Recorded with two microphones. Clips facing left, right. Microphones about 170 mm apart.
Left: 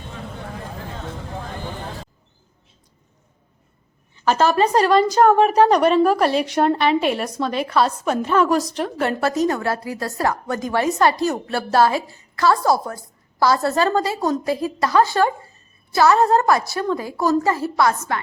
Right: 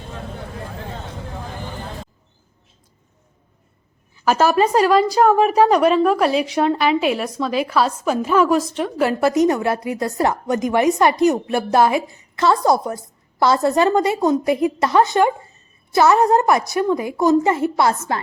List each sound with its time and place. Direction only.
4.3 s a woman's voice: 10° right (ahead or behind)
9.2 s a woman's voice: 20° right (ahead or behind)